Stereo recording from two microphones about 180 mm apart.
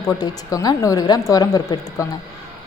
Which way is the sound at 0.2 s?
20° left (ahead or behind).